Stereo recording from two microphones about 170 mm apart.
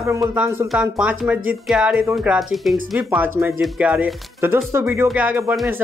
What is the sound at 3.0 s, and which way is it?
Speech, 10° right (ahead or behind).